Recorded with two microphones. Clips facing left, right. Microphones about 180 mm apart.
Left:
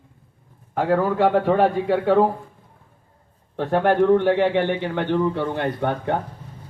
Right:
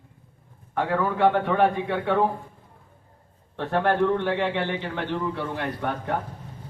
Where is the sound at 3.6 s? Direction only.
45° left (ahead or behind).